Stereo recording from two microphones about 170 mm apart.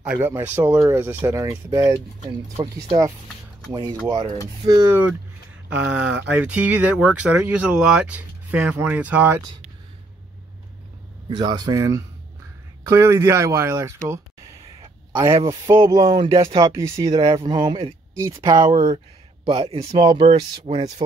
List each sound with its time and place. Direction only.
0.0 s speech: 10° right (ahead or behind); by 3.0 s 30° right (ahead or behind)
4.1 s speech: 25° right (ahead or behind)
11.2 s speech: 25° right (ahead or behind)
15.1 s speech: 25° right (ahead or behind)